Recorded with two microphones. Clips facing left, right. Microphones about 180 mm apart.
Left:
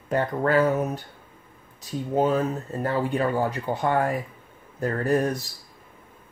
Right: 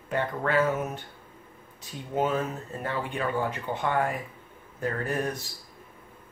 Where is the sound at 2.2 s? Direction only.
35° left (ahead or behind).